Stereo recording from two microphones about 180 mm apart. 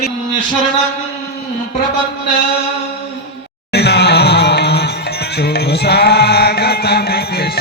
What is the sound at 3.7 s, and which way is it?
Music, 65° left (ahead or behind).